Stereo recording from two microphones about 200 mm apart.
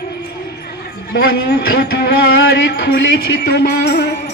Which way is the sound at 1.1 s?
50° left (ahead or behind).